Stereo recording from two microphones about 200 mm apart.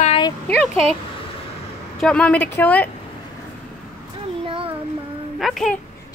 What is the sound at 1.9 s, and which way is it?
Speech, 5° left (ahead or behind).